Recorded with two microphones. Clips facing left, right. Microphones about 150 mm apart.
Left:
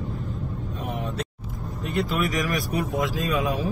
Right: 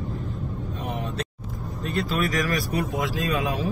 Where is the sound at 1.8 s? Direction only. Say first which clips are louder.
Left 1 dB; 20° left (ahead or behind).